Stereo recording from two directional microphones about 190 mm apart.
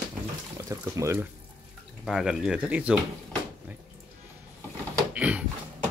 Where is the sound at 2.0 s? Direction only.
Centre (ahead or behind).